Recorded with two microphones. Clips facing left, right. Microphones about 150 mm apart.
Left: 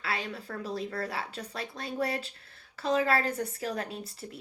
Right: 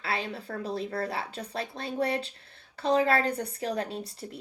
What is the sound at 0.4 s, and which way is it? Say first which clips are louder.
Speech: right 2 dB; 30° right (ahead or behind).